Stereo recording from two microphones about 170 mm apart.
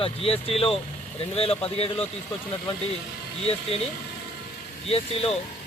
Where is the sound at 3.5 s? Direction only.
35° left (ahead or behind).